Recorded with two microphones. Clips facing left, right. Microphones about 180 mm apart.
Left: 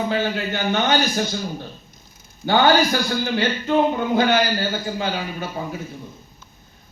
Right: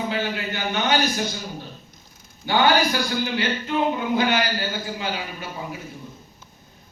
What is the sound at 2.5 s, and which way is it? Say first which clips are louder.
Speech: left 3 dB; 50° left (ahead or behind).